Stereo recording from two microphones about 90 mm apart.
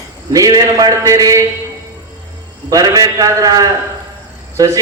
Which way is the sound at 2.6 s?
40° right (ahead or behind).